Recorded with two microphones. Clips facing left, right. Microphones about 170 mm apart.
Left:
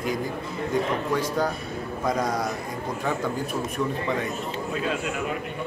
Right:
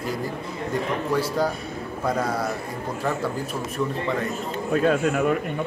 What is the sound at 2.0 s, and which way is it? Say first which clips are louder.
Speech: right 1 dB; 5° right (ahead or behind).